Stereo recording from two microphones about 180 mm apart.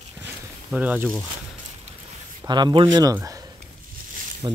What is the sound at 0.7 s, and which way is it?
Speech, 10° right (ahead or behind).